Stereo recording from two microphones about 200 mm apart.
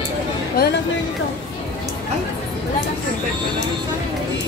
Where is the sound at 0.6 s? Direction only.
50° left (ahead or behind).